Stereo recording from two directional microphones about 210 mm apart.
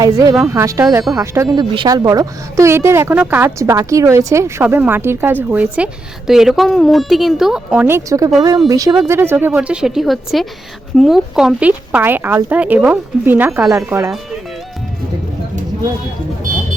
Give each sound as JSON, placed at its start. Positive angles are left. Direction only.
{"t": 0.0, "sound": "a woman's voice", "side_deg": -15}